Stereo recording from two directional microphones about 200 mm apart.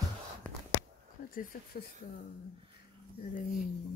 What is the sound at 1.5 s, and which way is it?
Speech, 45° left (ahead or behind).